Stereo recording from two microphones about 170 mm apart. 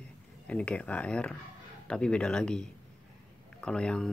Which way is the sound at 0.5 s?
5° left (ahead or behind).